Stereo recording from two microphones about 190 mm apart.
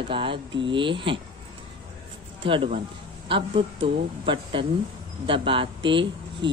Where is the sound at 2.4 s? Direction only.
25° right (ahead or behind).